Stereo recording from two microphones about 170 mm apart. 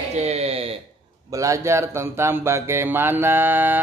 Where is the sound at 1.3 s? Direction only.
20° right (ahead or behind).